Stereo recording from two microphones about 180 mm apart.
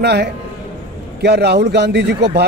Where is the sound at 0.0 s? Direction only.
65° right (ahead or behind).